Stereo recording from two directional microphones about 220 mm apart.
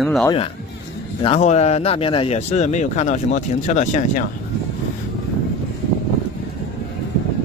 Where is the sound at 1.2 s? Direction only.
30° left (ahead or behind).